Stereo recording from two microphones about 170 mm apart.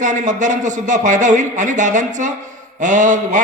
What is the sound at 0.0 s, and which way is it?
A man's voice, 45° right (ahead or behind).